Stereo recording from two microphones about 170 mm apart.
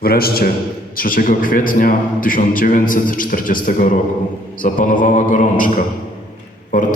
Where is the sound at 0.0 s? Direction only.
60° left (ahead or behind).